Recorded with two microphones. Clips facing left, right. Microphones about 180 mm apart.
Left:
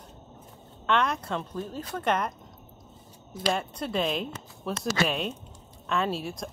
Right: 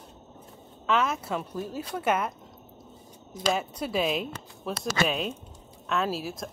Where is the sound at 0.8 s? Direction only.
5° right (ahead or behind).